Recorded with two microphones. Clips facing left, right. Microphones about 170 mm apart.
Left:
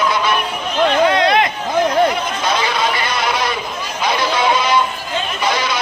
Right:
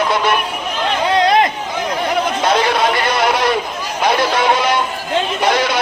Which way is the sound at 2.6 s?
60° right (ahead or behind).